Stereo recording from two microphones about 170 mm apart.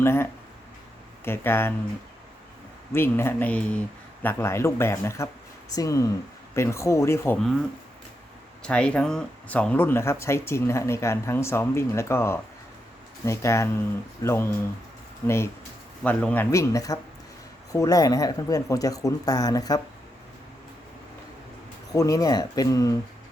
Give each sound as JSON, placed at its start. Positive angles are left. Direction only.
{"t": 0.0, "sound": "speech", "side_deg": 15}
{"t": 2.9, "sound": "speech", "side_deg": 15}
{"t": 8.6, "sound": "speech", "side_deg": 5}
{"t": 16.0, "sound": "speech", "side_deg": 10}
{"t": 21.9, "sound": "speech", "side_deg": 20}